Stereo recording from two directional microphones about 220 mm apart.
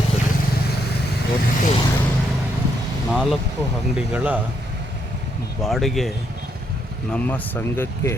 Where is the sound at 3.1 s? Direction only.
5° right (ahead or behind).